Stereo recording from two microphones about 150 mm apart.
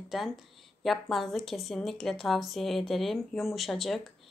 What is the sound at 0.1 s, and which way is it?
A woman's voice, centre (ahead or behind).